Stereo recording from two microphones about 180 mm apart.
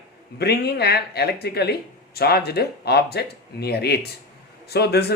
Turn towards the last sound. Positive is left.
turn(degrees=65)  # may be behind; listen again after turning